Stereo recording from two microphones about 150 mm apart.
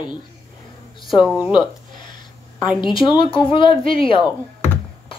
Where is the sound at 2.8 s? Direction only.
35° left (ahead or behind).